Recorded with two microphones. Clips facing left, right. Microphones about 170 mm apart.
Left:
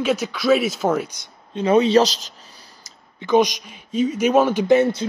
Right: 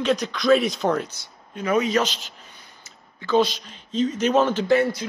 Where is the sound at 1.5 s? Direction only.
25° left (ahead or behind).